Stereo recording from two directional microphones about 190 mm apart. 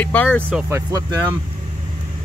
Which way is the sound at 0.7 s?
15° right (ahead or behind).